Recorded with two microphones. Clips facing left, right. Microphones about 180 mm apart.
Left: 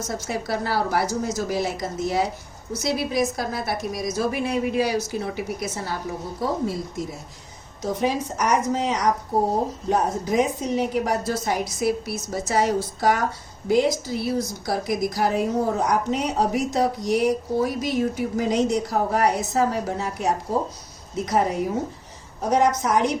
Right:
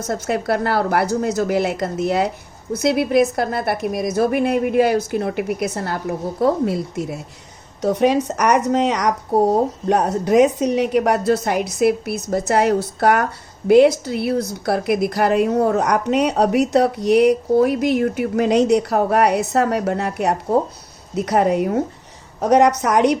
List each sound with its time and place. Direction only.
0.1 s a woman's voice: 60° right (ahead or behind)